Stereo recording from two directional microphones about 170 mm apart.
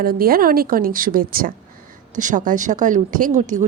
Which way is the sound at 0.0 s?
60° right (ahead or behind).